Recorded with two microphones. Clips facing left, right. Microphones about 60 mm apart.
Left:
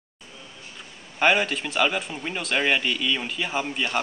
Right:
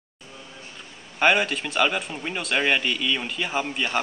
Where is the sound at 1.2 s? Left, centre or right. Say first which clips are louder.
Right 1 dB; centre.